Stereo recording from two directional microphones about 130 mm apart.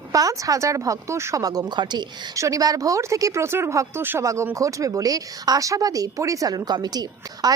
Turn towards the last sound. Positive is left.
turn(degrees=-30)  # may be behind; listen again after turning